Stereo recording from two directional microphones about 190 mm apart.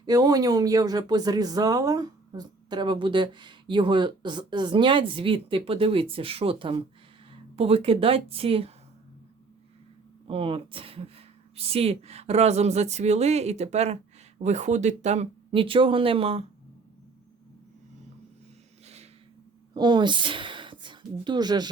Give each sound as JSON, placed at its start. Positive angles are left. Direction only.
{"t": 0.0, "sound": "speech", "side_deg": -20}
{"t": 10.2, "sound": "speech", "side_deg": -30}
{"t": 19.7, "sound": "a woman's voice", "side_deg": -25}